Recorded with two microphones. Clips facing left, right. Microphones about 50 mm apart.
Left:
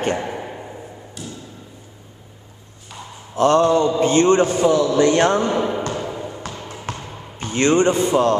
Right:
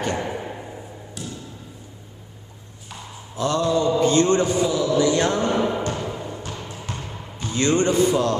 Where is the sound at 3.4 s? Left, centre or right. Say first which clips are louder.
Left 6 dB; left.